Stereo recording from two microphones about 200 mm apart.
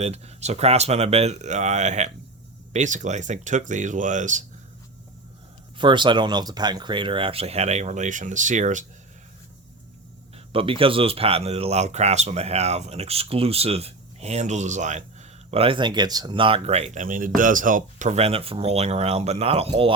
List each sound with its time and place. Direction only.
0.0 s speech: 35° right (ahead or behind)
5.7 s speech: 25° right (ahead or behind); by 8.9 s 40° right (ahead or behind)
10.3 s speech: 25° right (ahead or behind)